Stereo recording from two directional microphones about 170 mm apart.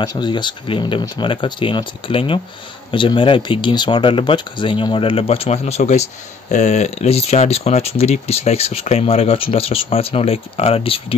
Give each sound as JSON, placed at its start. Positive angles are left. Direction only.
{"t": 0.0, "sound": "speech", "side_deg": 25}